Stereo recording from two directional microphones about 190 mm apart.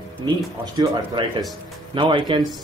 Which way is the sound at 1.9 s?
25° right (ahead or behind).